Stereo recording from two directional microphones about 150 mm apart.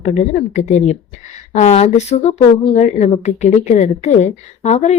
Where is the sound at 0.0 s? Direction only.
50° left (ahead or behind).